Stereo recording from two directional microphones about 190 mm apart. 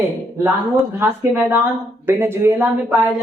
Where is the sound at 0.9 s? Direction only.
15° right (ahead or behind).